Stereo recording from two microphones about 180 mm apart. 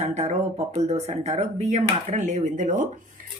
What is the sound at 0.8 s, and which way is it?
Speech, 40° right (ahead or behind).